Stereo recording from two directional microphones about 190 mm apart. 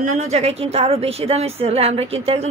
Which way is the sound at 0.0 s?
40° right (ahead or behind).